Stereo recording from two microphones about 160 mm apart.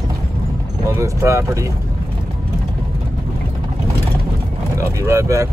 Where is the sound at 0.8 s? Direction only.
20° right (ahead or behind).